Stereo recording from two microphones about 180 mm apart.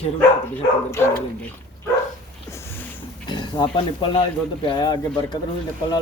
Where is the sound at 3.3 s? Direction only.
25° left (ahead or behind).